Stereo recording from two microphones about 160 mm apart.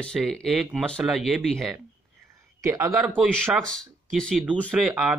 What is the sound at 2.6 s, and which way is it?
Speech, 20° right (ahead or behind).